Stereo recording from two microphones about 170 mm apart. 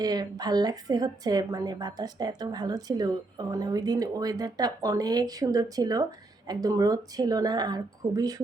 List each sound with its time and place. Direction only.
0.0 s a woman's voice: 25° right (ahead or behind)